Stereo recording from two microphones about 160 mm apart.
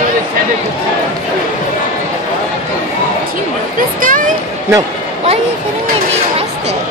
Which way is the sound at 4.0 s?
55° right (ahead or behind).